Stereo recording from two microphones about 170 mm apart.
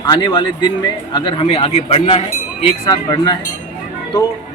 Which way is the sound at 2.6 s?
25° left (ahead or behind).